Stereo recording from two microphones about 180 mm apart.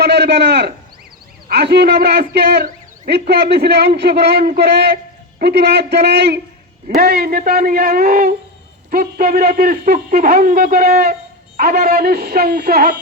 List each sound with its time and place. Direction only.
0.0 s a sound: 70° right (ahead or behind)
1.5 s a man's voice: 65° right (ahead or behind)
6.8 s a man's voice: 60° right (ahead or behind)